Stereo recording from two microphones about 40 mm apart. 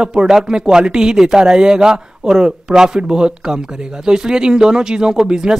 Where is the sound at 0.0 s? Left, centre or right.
Centre.